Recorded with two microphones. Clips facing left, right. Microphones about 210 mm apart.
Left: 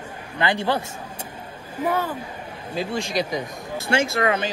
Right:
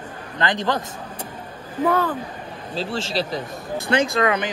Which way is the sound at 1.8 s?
50° right (ahead or behind).